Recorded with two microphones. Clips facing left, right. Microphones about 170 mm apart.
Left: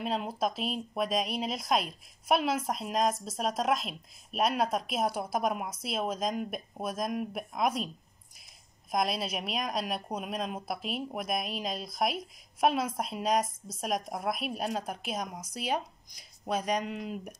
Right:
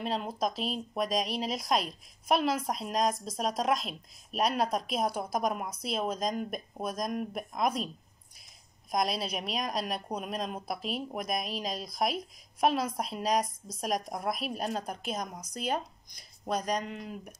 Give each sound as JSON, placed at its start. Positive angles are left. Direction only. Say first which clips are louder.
{"t": 0.0, "sound": "a woman's voice", "louder": "left 1 dB", "side_deg": 5}
{"t": 8.9, "sound": "a woman's voice", "louder": "even", "side_deg": 0}